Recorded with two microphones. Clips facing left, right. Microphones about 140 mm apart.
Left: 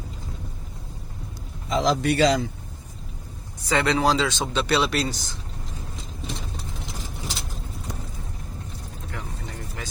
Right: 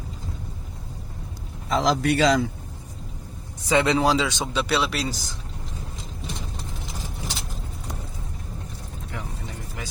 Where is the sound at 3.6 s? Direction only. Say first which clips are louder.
Right 1 dB; 20° right (ahead or behind); by 5.2 s 5° right (ahead or behind).